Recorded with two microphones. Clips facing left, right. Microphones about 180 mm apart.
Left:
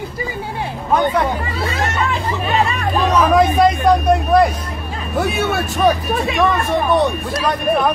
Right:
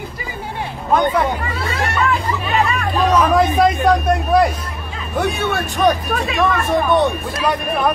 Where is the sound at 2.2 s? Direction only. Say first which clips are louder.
Left 1 dB; 40° left (ahead or behind).